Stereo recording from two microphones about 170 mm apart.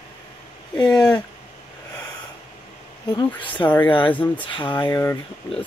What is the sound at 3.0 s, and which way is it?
Speech, 25° left (ahead or behind).